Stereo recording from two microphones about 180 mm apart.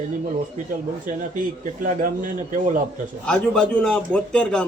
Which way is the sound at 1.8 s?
45° right (ahead or behind).